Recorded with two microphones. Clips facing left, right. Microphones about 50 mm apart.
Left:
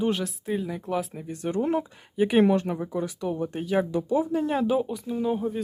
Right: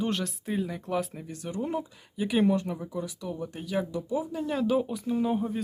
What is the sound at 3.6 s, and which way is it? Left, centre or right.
Speech, left.